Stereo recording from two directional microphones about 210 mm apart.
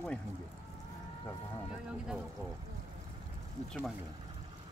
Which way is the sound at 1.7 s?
5° right (ahead or behind).